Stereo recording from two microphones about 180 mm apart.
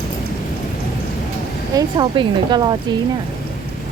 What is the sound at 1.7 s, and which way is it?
Speech, 20° right (ahead or behind).